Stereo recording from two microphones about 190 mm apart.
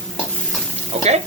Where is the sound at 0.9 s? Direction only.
35° right (ahead or behind).